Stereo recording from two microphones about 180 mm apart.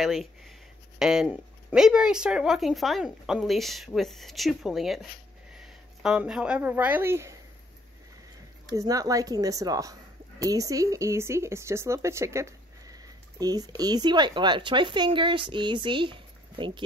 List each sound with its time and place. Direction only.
0.0 s speech: centre (ahead or behind)
8.6 s speech: 20° right (ahead or behind)